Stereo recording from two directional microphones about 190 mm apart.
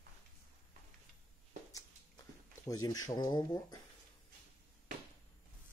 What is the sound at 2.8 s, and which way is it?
Speech, 20° left (ahead or behind).